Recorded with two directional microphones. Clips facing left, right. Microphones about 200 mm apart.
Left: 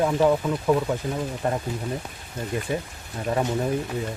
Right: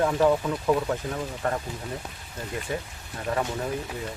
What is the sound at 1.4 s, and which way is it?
Speech, 15° left (ahead or behind).